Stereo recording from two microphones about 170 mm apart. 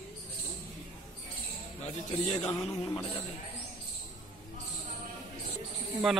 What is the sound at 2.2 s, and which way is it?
Music, 35° left (ahead or behind).